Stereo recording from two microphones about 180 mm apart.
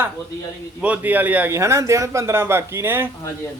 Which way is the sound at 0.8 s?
10° right (ahead or behind).